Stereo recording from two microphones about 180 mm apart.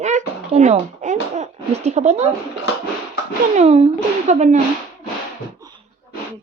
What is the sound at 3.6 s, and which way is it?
A child's voice, 35° right (ahead or behind).